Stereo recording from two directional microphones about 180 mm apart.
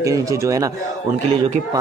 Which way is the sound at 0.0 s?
20° right (ahead or behind).